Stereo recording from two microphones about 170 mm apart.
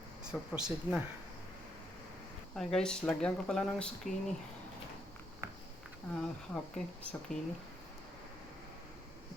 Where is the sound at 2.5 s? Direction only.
5° left (ahead or behind).